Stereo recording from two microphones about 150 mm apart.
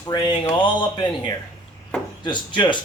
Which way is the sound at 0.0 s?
30° left (ahead or behind).